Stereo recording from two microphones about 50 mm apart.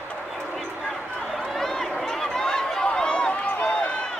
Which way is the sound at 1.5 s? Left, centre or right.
Centre.